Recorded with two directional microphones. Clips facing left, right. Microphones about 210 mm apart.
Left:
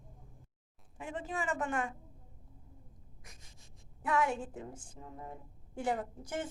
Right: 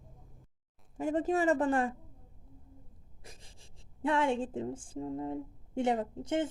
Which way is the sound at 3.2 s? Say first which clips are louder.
Right 7 dB; 30° right (ahead or behind).